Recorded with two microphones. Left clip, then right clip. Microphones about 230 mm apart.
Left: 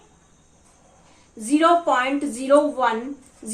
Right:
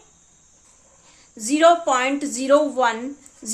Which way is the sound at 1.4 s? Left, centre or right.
Right.